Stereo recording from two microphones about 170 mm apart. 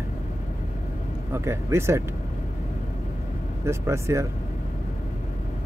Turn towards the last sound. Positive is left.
turn(degrees=-15)  # may be behind; listen again after turning